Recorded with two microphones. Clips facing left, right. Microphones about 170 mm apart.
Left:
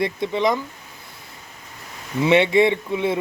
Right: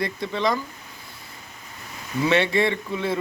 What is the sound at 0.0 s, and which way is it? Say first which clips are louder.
Speech: left 4 dB; 20° left (ahead or behind).